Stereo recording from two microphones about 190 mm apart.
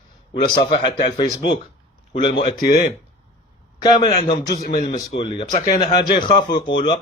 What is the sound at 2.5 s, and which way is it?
Speech, 45° left (ahead or behind).